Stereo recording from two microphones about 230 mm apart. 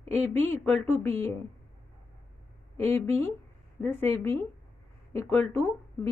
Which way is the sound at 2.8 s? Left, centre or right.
Centre.